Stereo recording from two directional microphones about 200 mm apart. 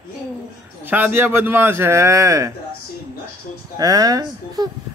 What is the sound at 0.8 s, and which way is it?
Speech, 10° right (ahead or behind).